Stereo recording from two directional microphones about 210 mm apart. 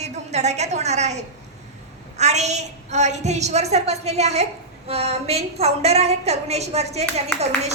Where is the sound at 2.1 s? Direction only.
35° right (ahead or behind).